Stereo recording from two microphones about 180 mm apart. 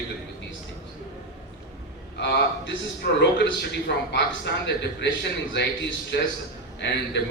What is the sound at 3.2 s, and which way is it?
A man's voice, 75° left (ahead or behind).